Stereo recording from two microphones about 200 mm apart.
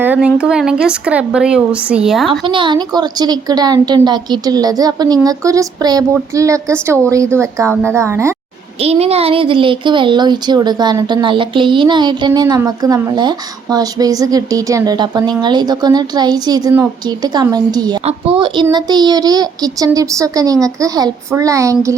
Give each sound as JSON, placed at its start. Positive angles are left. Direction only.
{"t": 0.0, "sound": "speech", "side_deg": -5}
{"t": 2.5, "sound": "speech", "side_deg": -25}
{"t": 8.8, "sound": "speech", "side_deg": -30}